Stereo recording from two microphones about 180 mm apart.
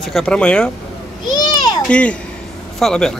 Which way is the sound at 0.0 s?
5° left (ahead or behind).